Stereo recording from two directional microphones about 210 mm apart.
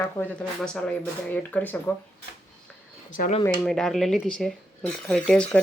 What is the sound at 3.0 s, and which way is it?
Speech, 40° left (ahead or behind).